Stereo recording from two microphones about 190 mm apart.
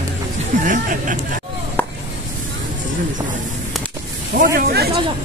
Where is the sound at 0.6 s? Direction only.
45° right (ahead or behind).